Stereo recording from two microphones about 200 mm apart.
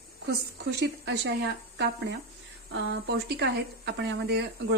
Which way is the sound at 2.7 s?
60° right (ahead or behind).